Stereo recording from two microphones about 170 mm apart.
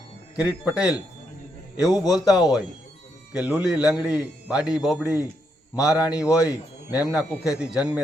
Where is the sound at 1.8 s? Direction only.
20° left (ahead or behind).